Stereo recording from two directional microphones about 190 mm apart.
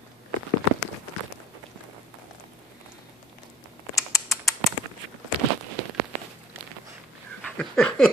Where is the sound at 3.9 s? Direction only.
15° left (ahead or behind).